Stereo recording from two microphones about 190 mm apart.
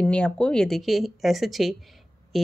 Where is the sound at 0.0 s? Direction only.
5° left (ahead or behind).